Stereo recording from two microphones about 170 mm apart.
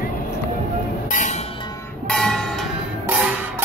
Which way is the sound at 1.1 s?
50° left (ahead or behind).